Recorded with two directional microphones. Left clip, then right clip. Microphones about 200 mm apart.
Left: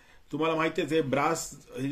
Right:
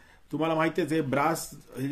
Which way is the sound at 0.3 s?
20° right (ahead or behind).